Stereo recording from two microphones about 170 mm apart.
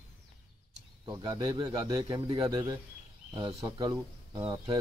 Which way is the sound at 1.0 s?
20° right (ahead or behind).